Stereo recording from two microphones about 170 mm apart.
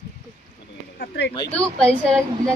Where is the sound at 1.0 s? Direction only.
85° left.